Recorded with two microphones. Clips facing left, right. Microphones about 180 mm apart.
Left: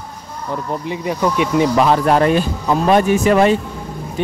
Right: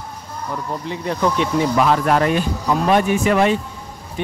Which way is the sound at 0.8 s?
10° left (ahead or behind).